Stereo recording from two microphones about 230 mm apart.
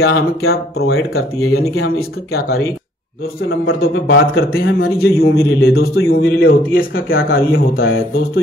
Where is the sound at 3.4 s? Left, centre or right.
Left.